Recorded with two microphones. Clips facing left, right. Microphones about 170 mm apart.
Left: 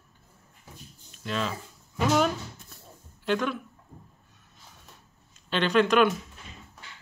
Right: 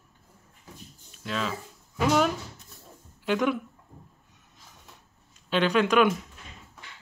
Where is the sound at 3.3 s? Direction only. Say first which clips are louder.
Right 2 dB; 15° right (ahead or behind).